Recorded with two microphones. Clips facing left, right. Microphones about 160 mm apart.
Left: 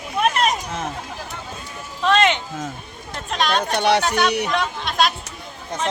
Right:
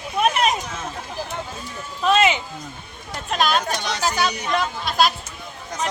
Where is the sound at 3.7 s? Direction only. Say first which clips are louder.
Left 8 dB; 65° left (ahead or behind).